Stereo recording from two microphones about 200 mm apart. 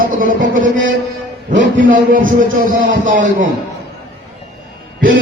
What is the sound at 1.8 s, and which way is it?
A man's voice, 40° right (ahead or behind).